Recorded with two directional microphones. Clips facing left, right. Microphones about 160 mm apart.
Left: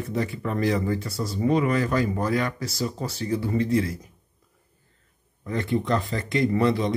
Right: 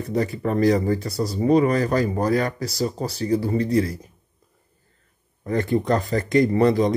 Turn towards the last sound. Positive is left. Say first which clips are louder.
# right 4 dB
turn(degrees=-45)  # may be behind; listen again after turning